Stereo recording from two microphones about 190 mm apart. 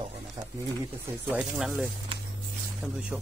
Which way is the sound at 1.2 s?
5° right (ahead or behind).